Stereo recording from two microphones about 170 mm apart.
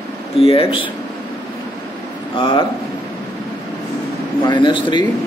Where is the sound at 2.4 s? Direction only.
30° left (ahead or behind).